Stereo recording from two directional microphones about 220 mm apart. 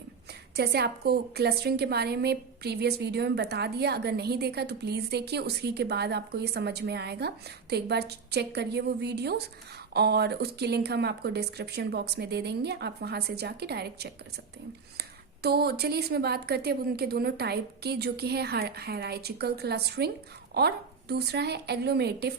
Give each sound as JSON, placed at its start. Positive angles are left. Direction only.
{"t": 0.5, "sound": "a woman's voice", "side_deg": -45}